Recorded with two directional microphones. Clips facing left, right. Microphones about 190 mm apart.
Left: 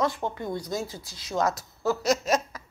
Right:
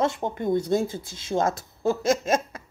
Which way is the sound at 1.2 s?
25° right (ahead or behind).